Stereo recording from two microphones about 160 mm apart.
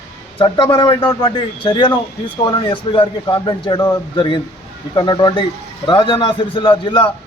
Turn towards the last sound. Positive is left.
turn(degrees=30)  # may be behind; listen again after turning